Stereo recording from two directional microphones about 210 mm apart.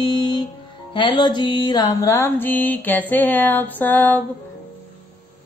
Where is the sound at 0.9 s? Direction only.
25° left (ahead or behind).